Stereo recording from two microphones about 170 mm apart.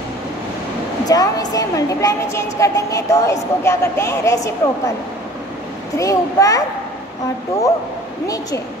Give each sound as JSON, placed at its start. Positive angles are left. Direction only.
{"t": 1.0, "sound": "a woman's voice", "side_deg": 20}
{"t": 5.9, "sound": "a woman's voice", "side_deg": 20}